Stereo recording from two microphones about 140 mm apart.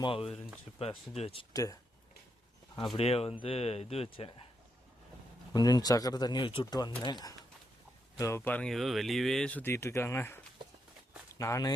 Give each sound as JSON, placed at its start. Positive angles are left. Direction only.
{"t": 0.0, "sound": "speech", "side_deg": 40}
{"t": 2.9, "sound": "speech", "side_deg": 45}
{"t": 5.5, "sound": "speech", "side_deg": 30}
{"t": 8.2, "sound": "speech", "side_deg": 15}